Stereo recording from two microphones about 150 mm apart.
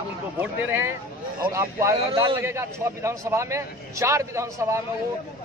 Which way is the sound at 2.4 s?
20° right (ahead or behind).